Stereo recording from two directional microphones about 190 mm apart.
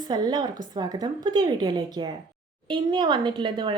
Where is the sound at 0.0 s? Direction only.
20° right (ahead or behind).